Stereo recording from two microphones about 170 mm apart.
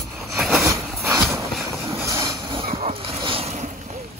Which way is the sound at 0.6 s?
15° right (ahead or behind).